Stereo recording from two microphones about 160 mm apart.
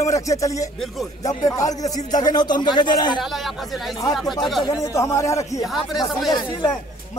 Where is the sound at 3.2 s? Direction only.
Centre (ahead or behind).